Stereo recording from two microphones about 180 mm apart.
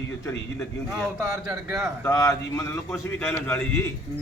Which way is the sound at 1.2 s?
15° right (ahead or behind).